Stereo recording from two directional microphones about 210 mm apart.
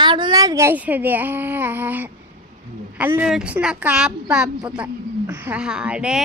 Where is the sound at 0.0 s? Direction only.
20° right (ahead or behind).